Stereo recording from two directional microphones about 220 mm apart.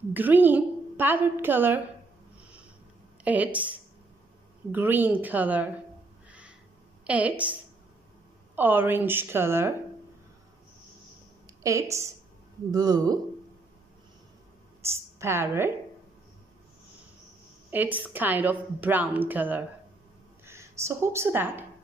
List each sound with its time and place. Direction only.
0.1 s a woman's voice: 10° right (ahead or behind)
3.3 s a woman's voice: 5° right (ahead or behind)
4.7 s a woman's voice: 10° right (ahead or behind)
7.1 s a woman's voice: 5° right (ahead or behind)
8.5 s a woman's voice: 10° right (ahead or behind)
11.4 s a woman's voice: 15° right (ahead or behind)
14.8 s a woman's voice: 10° right (ahead or behind)
17.6 s a woman's voice: 10° right (ahead or behind)